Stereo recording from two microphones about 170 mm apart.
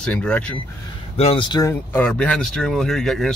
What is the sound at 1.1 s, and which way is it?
Speech, 35° left (ahead or behind).